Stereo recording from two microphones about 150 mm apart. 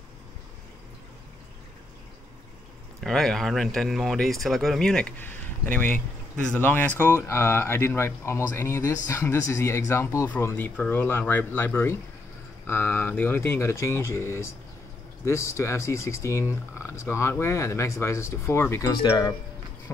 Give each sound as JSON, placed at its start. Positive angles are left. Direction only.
{"t": 3.0, "sound": "speech", "side_deg": 0}